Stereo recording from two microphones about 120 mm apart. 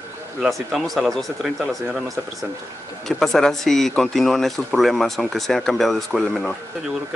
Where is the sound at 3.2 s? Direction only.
5° left (ahead or behind).